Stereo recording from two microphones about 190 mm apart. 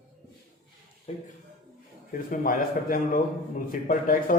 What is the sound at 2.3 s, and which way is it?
A man's voice, 45° left (ahead or behind).